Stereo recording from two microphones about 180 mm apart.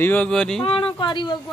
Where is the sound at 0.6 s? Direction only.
30° left (ahead or behind).